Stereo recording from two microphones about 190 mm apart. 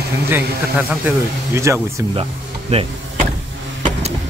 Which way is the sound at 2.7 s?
35° right (ahead or behind).